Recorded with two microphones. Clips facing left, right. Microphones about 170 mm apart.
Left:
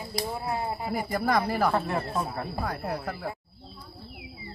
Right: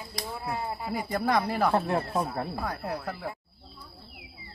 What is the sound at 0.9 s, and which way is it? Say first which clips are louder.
Speech: even; 5° left (ahead or behind).